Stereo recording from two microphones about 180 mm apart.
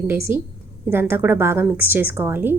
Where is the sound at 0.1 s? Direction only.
15° right (ahead or behind).